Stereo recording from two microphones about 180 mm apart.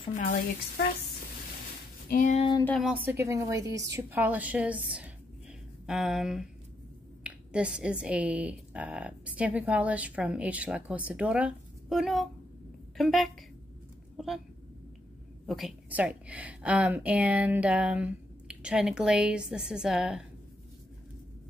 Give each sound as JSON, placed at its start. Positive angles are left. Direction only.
{"t": 0.1, "sound": "speech", "side_deg": 45}
{"t": 2.0, "sound": "a sound", "side_deg": 45}
{"t": 2.8, "sound": "a woman's voice", "side_deg": -10}
{"t": 15.4, "sound": "speech", "side_deg": 0}